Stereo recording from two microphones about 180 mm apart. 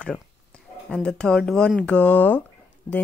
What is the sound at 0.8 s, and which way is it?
Speech, 5° left (ahead or behind).